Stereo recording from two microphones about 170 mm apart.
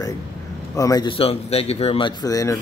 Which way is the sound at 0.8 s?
20° left (ahead or behind).